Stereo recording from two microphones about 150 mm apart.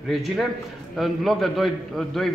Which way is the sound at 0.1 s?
Centre (ahead or behind).